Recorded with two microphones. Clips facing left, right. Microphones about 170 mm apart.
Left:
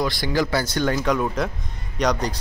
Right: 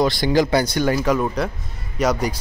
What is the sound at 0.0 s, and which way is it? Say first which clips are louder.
Speech: right 5 dB; 25° right (ahead or behind).